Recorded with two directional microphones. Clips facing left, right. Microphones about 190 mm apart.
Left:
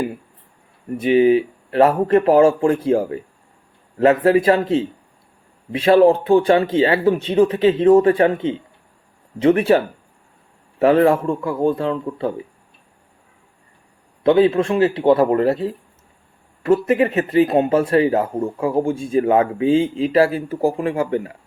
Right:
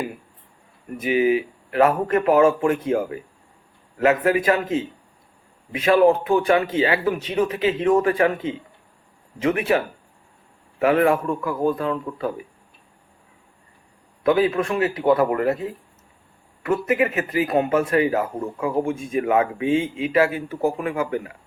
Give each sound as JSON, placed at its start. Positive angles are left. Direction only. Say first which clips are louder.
{"t": 0.9, "sound": "a man's voice", "louder": "left 5 dB", "side_deg": 30}
{"t": 14.3, "sound": "a man's voice", "louder": "left 5 dB", "side_deg": 30}